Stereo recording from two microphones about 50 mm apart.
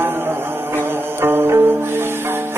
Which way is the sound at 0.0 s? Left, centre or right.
Right.